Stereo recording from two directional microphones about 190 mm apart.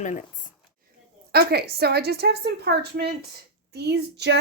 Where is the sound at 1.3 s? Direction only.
55° right (ahead or behind).